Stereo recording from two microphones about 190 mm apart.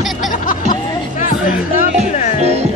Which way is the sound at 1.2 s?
45° left (ahead or behind).